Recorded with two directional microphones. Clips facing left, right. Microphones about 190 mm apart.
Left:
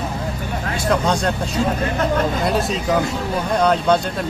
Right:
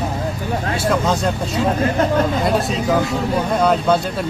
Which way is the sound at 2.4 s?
Centre (ahead or behind).